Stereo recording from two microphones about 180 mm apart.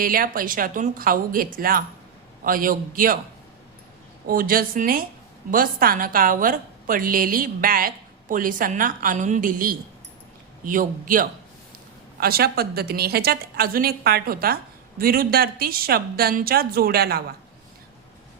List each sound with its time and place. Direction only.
0.0 s a woman's voice: 50° right (ahead or behind)
4.3 s a woman's voice: 50° right (ahead or behind)